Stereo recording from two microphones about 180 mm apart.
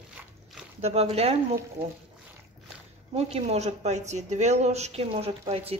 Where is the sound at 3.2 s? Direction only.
35° right (ahead or behind).